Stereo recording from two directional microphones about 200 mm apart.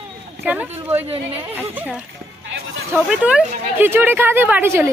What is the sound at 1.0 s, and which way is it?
Speech, 30° right (ahead or behind).